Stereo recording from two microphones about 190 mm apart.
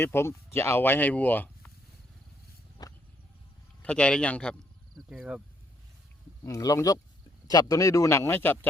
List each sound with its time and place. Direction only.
0.0 s speech: 10° left (ahead or behind)
2.8 s vehicle: 20° left (ahead or behind)
3.8 s speech: 5° left (ahead or behind)
6.4 s speech: 15° left (ahead or behind)